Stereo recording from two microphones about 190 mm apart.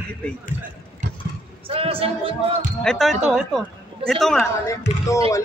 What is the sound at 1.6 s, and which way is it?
Speech, 30° right (ahead or behind).